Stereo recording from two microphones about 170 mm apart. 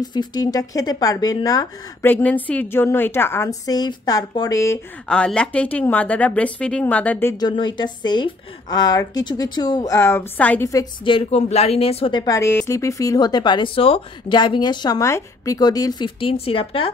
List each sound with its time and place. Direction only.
0.0 s a woman's voice: 25° left (ahead or behind)
5.0 s speech: 5° left (ahead or behind)
7.3 s a woman's voice: 25° left (ahead or behind)
11.1 s a woman's voice: 40° left (ahead or behind)